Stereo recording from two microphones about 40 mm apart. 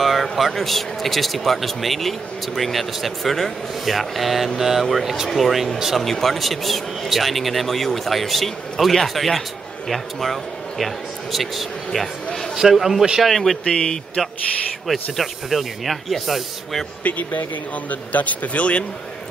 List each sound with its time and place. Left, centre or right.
0.0 s speech: centre
13.7 s speech: centre
14.9 s speech: centre
17.0 s speech: left